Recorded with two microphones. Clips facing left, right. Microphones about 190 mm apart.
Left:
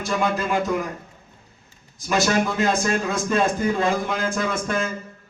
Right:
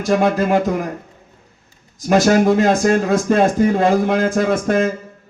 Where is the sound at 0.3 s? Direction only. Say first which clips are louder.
Right 7 dB; 60° right (ahead or behind).